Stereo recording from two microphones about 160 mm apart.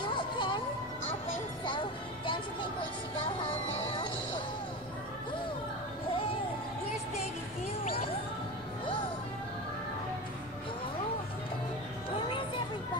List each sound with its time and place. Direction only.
0.0 s music: 30° left (ahead or behind)
1.7 s music: 30° left (ahead or behind)